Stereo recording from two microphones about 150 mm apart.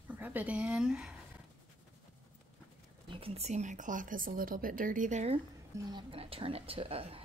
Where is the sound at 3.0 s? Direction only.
35° right (ahead or behind); by 5.3 s 50° right (ahead or behind).